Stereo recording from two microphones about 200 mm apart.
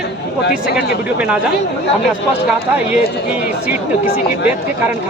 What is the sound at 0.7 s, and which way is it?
Speech, 50° left (ahead or behind).